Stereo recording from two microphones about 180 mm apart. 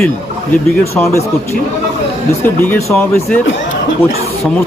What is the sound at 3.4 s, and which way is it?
Chatter, 90° left.